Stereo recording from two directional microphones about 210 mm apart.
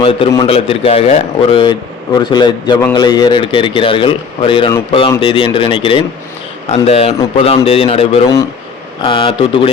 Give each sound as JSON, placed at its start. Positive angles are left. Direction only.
{"t": 0.0, "sound": "speech", "side_deg": 25}